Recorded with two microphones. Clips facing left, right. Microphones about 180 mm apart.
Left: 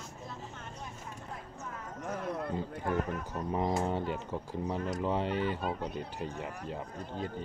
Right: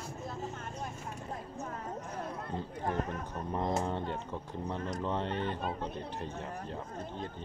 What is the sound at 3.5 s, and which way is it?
Speech, 5° left (ahead or behind).